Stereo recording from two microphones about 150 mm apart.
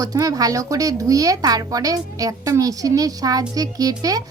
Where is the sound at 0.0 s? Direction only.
25° right (ahead or behind).